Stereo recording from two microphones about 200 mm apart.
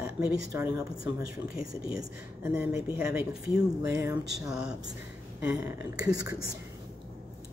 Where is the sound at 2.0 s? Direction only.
10° right (ahead or behind).